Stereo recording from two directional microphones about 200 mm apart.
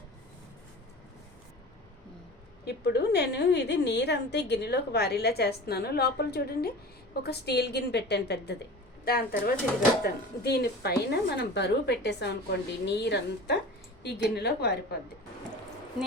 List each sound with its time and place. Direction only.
2.6 s a woman's voice: 55° left (ahead or behind)